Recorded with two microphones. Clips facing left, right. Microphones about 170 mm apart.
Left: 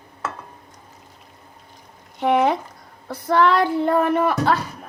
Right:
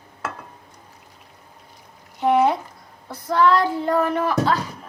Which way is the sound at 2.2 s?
70° left (ahead or behind).